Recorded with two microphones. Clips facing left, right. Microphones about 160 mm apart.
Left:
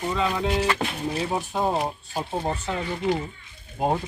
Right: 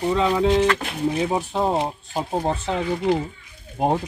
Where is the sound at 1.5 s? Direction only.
25° right (ahead or behind).